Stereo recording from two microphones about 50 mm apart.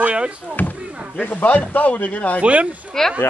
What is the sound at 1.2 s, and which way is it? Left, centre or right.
Speech, left.